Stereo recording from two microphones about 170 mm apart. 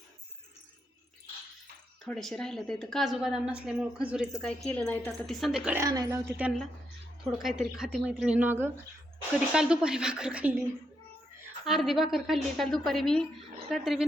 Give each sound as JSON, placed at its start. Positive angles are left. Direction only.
{"t": 2.0, "sound": "a woman's voice", "side_deg": 5}
{"t": 5.8, "sound": "a woman's voice", "side_deg": -20}
{"t": 7.4, "sound": "a woman's voice", "side_deg": 0}
{"t": 11.6, "sound": "a woman's voice", "side_deg": 0}